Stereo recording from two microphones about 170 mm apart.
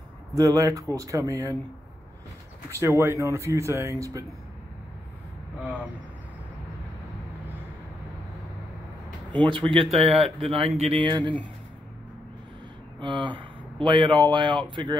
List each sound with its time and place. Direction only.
0.3 s speech: 20° right (ahead or behind)
2.7 s speech: 15° right (ahead or behind)
9.4 s speech: 30° right (ahead or behind)
13.0 s speech: 30° right (ahead or behind)